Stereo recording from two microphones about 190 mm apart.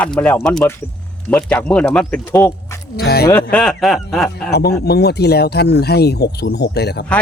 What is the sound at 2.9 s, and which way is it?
Speech, 55° left (ahead or behind).